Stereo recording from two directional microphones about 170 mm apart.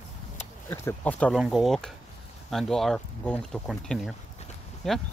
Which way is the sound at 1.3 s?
Centre (ahead or behind).